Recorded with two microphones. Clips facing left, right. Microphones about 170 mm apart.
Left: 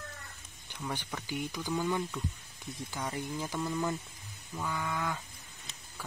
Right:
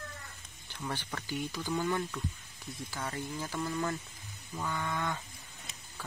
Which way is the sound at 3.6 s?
Centre (ahead or behind).